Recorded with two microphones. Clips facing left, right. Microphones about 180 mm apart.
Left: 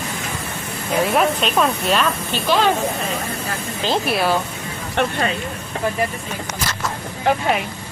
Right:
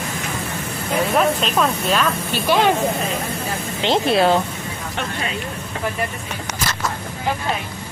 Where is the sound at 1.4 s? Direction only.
Centre (ahead or behind).